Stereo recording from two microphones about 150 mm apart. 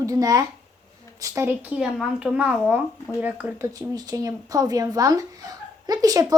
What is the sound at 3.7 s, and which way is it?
Speech, 25° right (ahead or behind).